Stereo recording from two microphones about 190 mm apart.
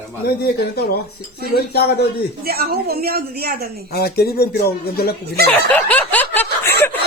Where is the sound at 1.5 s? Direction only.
60° left (ahead or behind).